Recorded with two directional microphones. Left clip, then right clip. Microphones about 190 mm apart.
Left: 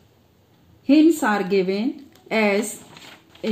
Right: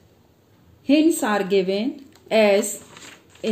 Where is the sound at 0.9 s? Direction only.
40° left (ahead or behind).